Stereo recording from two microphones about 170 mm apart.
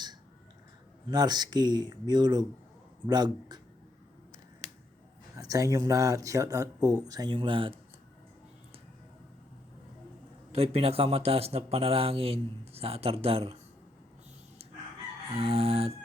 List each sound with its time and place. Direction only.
1.1 s speech: 25° right (ahead or behind)
5.4 s speech: 20° right (ahead or behind)
10.5 s a man's voice: 35° right (ahead or behind)
15.4 s a man's voice: 35° right (ahead or behind)